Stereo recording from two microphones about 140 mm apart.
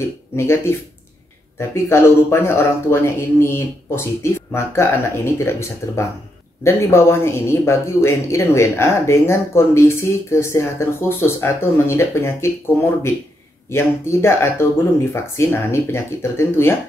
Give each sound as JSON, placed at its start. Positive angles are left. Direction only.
{"t": 0.4, "sound": "speech", "side_deg": 15}
{"t": 1.9, "sound": "speech", "side_deg": 20}